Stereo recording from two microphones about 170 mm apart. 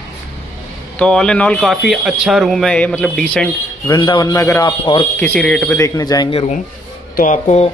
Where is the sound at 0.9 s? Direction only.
5° left (ahead or behind).